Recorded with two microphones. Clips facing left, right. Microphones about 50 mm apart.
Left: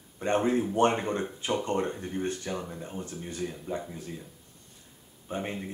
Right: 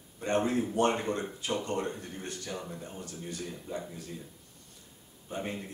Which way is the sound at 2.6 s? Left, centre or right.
Centre.